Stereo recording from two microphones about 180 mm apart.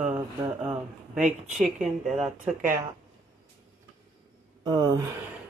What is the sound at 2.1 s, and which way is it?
Speech, 5° right (ahead or behind).